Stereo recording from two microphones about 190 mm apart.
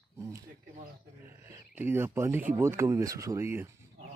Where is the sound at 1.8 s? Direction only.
10° right (ahead or behind).